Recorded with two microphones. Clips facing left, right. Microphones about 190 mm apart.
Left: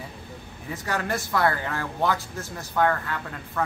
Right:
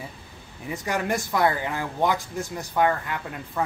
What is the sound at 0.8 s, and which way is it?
Speech, 15° right (ahead or behind).